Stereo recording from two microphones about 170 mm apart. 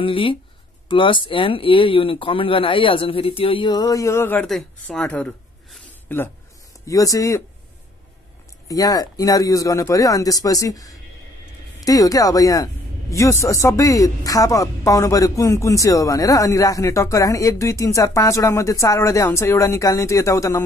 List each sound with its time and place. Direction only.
0.0 s speech: 30° left (ahead or behind); by 4.5 s 15° left (ahead or behind)
4.5 s speech: 5° left (ahead or behind); by 7.4 s 20° left (ahead or behind)
8.6 s speech: 20° left (ahead or behind)